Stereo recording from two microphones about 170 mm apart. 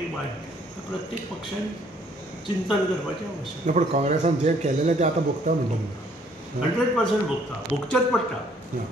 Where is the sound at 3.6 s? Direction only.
45° right (ahead or behind).